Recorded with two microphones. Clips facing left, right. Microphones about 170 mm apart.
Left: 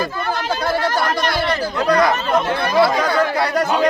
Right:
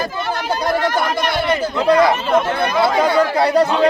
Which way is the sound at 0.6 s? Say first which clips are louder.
Right 2 dB; 15° right (ahead or behind).